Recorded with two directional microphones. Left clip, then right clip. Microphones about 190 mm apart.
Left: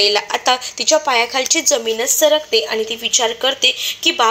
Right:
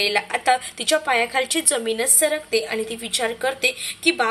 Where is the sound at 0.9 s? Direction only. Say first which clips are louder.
Left 5 dB; 20° right (ahead or behind).